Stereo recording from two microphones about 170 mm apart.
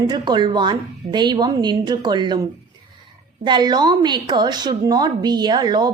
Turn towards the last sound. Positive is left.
turn(degrees=-25)  # may be behind; listen again after turning